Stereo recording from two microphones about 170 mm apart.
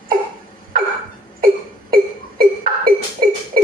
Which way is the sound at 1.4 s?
60° right (ahead or behind).